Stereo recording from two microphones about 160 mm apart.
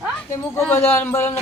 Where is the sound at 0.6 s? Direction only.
15° left (ahead or behind).